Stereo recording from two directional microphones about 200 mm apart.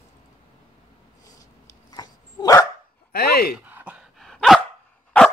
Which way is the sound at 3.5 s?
10° right (ahead or behind).